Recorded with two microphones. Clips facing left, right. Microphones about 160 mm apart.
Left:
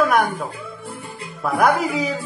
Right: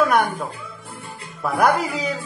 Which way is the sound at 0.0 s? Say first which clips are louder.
Even; centre (ahead or behind).